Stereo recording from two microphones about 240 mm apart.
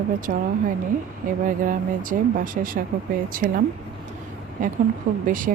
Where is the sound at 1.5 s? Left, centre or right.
Right.